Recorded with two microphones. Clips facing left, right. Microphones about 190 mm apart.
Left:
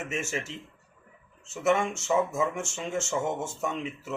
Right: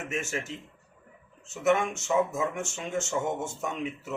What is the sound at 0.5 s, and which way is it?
Speech, 45° right (ahead or behind).